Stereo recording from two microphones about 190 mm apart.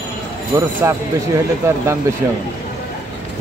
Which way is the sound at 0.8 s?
15° right (ahead or behind).